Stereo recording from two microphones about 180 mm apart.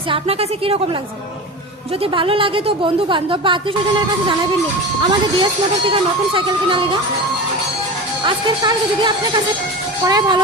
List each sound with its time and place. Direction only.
0.1 s a woman's voice: 30° right (ahead or behind)
2.1 s speech: 30° right (ahead or behind)
5.0 s speech: 30° right (ahead or behind)
8.2 s speech: 25° right (ahead or behind)